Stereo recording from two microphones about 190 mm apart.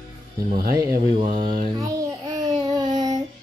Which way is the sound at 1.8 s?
20° right (ahead or behind).